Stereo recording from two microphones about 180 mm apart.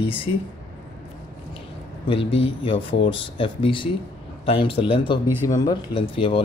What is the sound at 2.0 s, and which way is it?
Speech, 30° left (ahead or behind).